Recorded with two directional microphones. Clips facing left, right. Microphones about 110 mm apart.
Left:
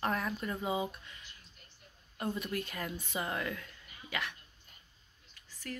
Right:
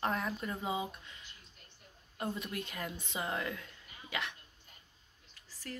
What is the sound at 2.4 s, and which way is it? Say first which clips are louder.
A woman's voice: left 3 dB; 20° right (ahead or behind).